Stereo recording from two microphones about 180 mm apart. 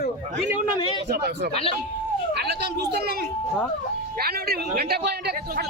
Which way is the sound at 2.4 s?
65° right (ahead or behind).